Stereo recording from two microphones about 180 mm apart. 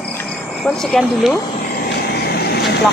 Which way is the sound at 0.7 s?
5° left (ahead or behind).